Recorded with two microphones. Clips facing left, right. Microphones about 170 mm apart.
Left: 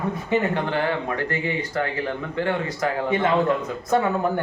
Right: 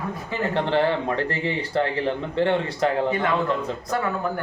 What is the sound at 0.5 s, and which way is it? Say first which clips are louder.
A man's voice: right 3 dB; 30° right (ahead or behind).